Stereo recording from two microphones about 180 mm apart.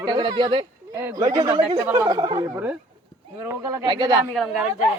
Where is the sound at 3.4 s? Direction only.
15° right (ahead or behind).